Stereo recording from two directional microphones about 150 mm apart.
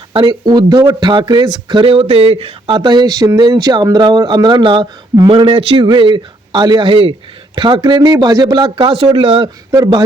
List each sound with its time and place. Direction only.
0.1 s speech: 35° right (ahead or behind)
9.7 s speech: 20° right (ahead or behind)